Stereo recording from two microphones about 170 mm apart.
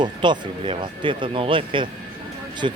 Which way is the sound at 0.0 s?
25° right (ahead or behind).